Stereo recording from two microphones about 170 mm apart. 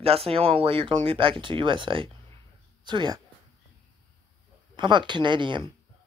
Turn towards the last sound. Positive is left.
turn(degrees=-30)  # may be behind; listen again after turning